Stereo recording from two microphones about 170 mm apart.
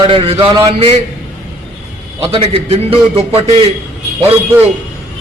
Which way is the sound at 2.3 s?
35° right (ahead or behind).